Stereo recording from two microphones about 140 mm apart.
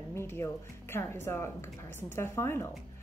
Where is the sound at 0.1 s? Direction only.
20° left (ahead or behind).